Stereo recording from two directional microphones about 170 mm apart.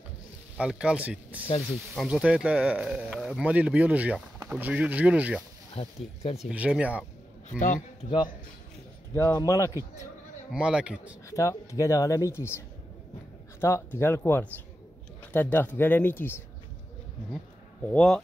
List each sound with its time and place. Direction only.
0.6 s speech: 5° right (ahead or behind)
5.8 s speech: 35° left (ahead or behind)
6.3 s speech: 5° right (ahead or behind)
7.4 s a man's voice: 50° left (ahead or behind)
9.1 s speech: 15° left (ahead or behind)
10.5 s speech: 5° right (ahead or behind)
11.2 s speech: 20° left (ahead or behind)
17.8 s speech: 5° left (ahead or behind)